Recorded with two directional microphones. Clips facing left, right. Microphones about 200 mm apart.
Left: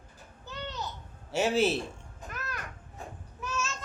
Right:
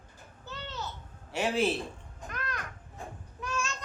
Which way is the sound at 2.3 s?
5° left (ahead or behind).